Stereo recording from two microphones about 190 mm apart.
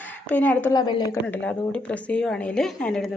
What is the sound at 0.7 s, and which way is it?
Speech, 20° left (ahead or behind).